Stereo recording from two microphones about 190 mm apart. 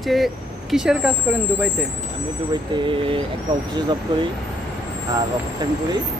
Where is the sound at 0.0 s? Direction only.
Centre (ahead or behind).